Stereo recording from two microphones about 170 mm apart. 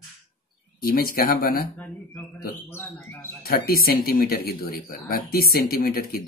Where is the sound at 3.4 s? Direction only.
60° left (ahead or behind).